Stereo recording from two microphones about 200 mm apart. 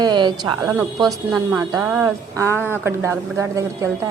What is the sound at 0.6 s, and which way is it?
A woman's voice, 10° right (ahead or behind).